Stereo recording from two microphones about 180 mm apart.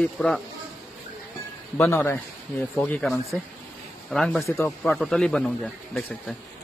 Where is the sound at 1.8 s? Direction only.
15° left (ahead or behind).